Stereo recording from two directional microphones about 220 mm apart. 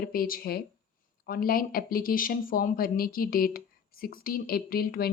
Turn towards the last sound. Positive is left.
turn(degrees=45)  # may be behind; listen again after turning